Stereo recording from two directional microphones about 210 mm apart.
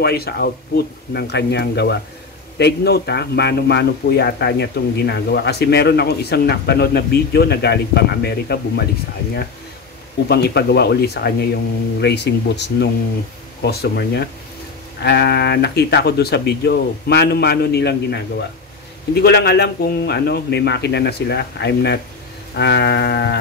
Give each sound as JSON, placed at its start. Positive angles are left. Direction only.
{"t": 0.0, "sound": "speech", "side_deg": 50}
{"t": 10.2, "sound": "speech", "side_deg": 50}